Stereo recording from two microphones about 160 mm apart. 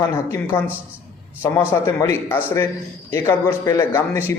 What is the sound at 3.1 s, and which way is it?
A man's voice, 15° left (ahead or behind).